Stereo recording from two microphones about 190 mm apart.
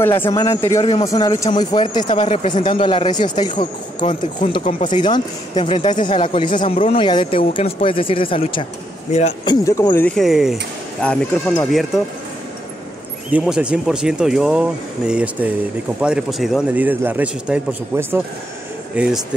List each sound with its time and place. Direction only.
0.0 s a man's voice: 10° left (ahead or behind)
2.0 s speech: 35° left (ahead or behind)
2.6 s speech: 25° left (ahead or behind)
4.0 s speech: 40° left (ahead or behind)
6.0 s speech: 25° left (ahead or behind)
10.0 s speech: centre (ahead or behind)
13.3 s a man's voice: 5° right (ahead or behind)